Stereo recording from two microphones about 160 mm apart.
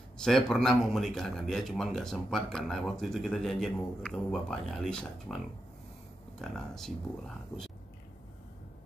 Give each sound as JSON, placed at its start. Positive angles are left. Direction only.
{"t": 0.2, "sound": "speech", "side_deg": 5}
{"t": 6.4, "sound": "speech", "side_deg": 0}
{"t": 7.5, "sound": "speech", "side_deg": 25}